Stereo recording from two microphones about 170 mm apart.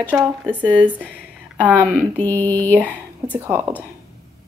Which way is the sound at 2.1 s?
10° left (ahead or behind).